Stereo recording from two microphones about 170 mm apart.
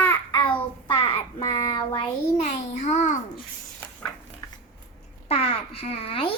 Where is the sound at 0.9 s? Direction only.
30° left (ahead or behind).